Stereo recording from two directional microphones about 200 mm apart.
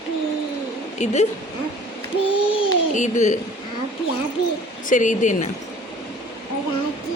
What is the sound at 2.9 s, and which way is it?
Speech, 40° left (ahead or behind).